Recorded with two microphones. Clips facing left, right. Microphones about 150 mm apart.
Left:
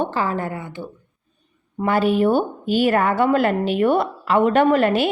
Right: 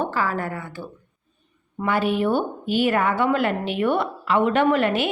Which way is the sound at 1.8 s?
35° left (ahead or behind).